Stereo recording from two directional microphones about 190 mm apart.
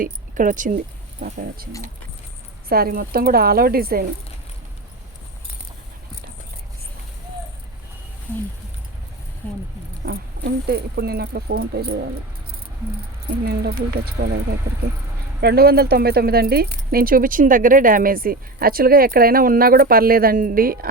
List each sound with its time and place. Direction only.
0.0 s speech: 45° right (ahead or behind)
10.1 s speech: 55° right (ahead or behind)
13.4 s speech: 55° right (ahead or behind)